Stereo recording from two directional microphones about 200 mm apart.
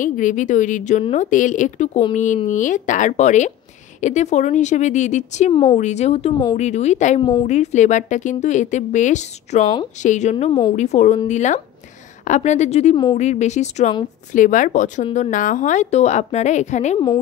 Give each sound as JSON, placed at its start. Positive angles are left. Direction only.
{"t": 0.0, "sound": "speech", "side_deg": 40}
{"t": 5.5, "sound": "a woman's voice", "side_deg": 25}
{"t": 5.8, "sound": "speech", "side_deg": 35}
{"t": 7.2, "sound": "a woman's voice", "side_deg": 20}
{"t": 7.4, "sound": "speech", "side_deg": 35}
{"t": 10.3, "sound": "a woman's voice", "side_deg": 20}
{"t": 10.8, "sound": "speech", "side_deg": 35}
{"t": 12.9, "sound": "a woman's voice", "side_deg": 20}
{"t": 13.2, "sound": "speech", "side_deg": 35}